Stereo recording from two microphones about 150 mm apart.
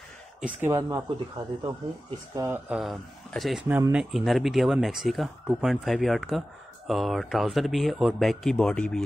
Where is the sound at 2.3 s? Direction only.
20° right (ahead or behind).